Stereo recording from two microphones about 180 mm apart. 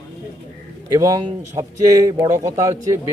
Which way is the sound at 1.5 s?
15° right (ahead or behind).